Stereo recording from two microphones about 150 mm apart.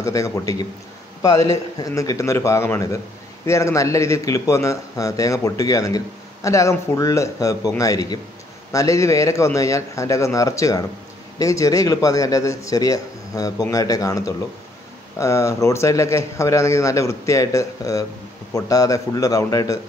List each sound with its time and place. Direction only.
0.0 s speech: 20° left (ahead or behind)